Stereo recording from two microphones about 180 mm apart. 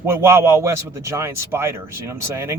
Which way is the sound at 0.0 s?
15° right (ahead or behind).